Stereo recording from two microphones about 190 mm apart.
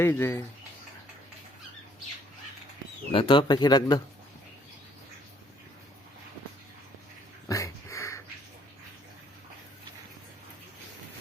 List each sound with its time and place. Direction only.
0.0 s speech: 15° left (ahead or behind)
3.1 s speech: 25° left (ahead or behind)
7.4 s a sound: 15° left (ahead or behind)